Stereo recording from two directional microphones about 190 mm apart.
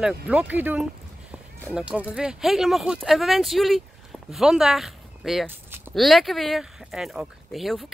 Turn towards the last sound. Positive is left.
turn(degrees=0)  # may be behind; listen again after turning